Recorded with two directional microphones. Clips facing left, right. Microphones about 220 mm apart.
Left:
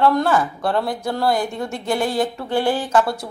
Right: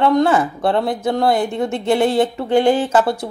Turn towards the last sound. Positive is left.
turn(degrees=-25)  # may be behind; listen again after turning